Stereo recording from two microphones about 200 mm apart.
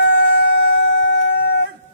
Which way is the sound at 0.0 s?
65° left (ahead or behind).